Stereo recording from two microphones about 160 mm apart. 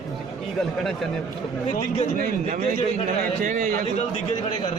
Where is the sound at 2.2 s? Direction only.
60° right (ahead or behind).